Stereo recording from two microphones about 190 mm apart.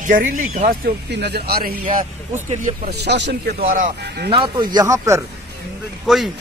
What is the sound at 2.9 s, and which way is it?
Speech, 60° right (ahead or behind).